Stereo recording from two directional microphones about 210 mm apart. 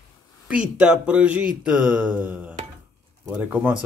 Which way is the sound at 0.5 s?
5° right (ahead or behind).